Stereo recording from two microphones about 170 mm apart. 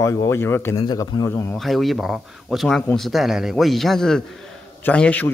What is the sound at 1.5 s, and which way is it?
Speech, centre (ahead or behind).